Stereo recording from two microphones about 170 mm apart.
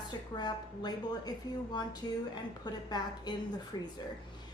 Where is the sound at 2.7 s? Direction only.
25° left (ahead or behind).